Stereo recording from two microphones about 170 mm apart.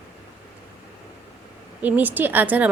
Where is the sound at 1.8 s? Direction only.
10° right (ahead or behind).